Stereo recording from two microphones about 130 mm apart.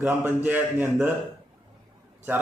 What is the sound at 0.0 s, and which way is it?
A man's voice, 15° right (ahead or behind).